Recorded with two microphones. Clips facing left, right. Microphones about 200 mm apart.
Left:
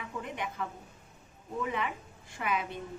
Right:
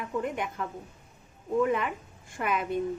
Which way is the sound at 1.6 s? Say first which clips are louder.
Right 4 dB; 50° right (ahead or behind).